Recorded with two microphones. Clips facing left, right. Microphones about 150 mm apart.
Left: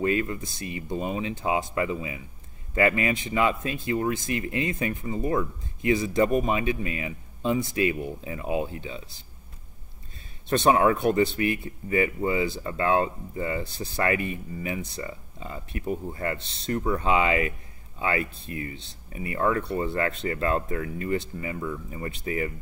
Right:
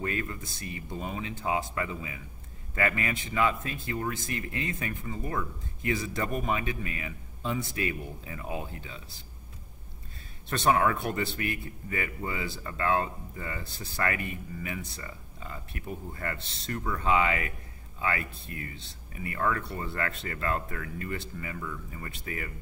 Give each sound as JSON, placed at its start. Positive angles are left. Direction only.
{"t": 0.0, "sound": "speech", "side_deg": 20}
{"t": 10.5, "sound": "speech", "side_deg": 20}